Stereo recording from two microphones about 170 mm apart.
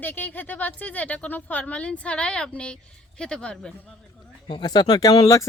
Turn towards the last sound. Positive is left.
turn(degrees=20)  # may be behind; listen again after turning